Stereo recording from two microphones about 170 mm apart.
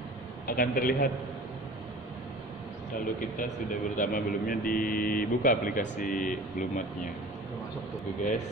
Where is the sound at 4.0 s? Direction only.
55° left (ahead or behind).